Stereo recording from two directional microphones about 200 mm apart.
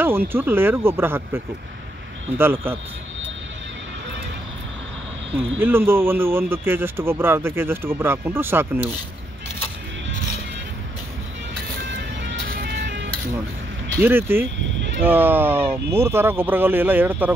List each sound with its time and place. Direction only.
0.0 s speech: 10° right (ahead or behind)
5.6 s speech: 10° right (ahead or behind)
12.2 s music: 55° right (ahead or behind)
13.9 s speech: 10° right (ahead or behind)